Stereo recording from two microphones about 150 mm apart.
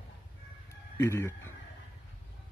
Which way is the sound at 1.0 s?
15° left (ahead or behind).